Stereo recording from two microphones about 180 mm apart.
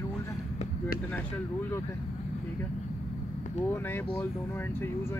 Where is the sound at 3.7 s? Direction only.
10° left (ahead or behind).